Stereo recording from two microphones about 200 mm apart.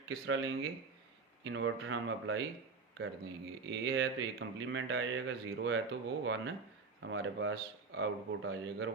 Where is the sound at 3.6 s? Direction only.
70° right (ahead or behind).